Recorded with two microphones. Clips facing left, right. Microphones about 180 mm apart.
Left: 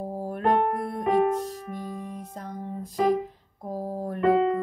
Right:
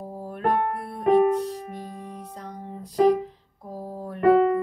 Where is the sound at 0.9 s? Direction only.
45° left (ahead or behind).